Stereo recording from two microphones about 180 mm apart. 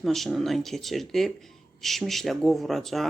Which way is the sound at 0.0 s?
Centre (ahead or behind).